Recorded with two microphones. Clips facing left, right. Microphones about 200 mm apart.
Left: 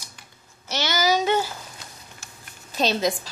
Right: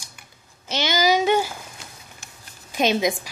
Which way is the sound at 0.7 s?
15° right (ahead or behind).